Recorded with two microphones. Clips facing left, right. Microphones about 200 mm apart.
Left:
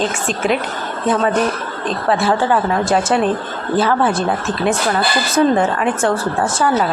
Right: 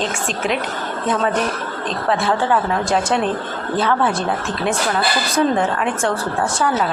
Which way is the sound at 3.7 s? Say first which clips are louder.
Left 3 dB; 5° left (ahead or behind).